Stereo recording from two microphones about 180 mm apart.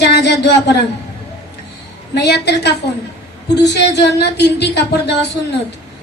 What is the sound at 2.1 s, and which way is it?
Speech, 70° left (ahead or behind).